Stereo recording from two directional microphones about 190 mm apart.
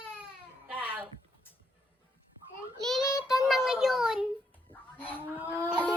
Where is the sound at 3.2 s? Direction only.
Centre (ahead or behind).